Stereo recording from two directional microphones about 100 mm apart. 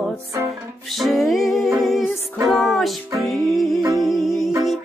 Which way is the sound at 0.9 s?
Centre (ahead or behind).